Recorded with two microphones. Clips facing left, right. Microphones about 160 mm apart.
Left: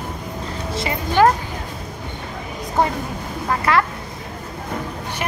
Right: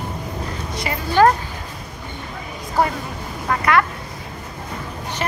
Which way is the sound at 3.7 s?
30° left (ahead or behind).